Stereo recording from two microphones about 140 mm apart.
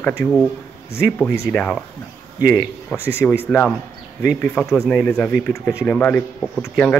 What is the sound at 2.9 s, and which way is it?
Speech, 15° left (ahead or behind).